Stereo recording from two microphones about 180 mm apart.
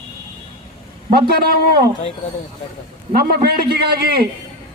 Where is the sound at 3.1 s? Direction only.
60° right (ahead or behind).